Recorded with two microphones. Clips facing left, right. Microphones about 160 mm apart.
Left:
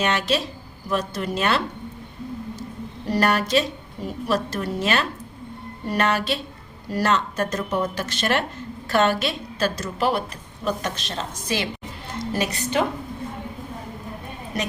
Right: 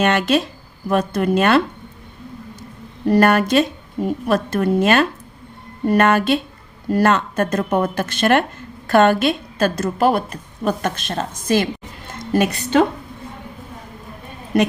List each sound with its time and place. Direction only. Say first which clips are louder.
0.0 s a woman's voice: right 6 dB; 55° right (ahead or behind)
3.1 s a woman's voice: right 7 dB; 55° right (ahead or behind)